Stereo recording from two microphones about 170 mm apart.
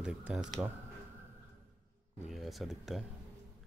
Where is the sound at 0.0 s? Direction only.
5° right (ahead or behind).